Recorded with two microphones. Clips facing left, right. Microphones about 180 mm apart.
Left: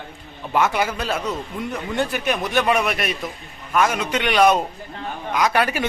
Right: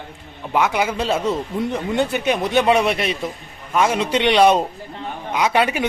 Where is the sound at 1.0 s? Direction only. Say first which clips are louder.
Right 5 dB; 25° right (ahead or behind).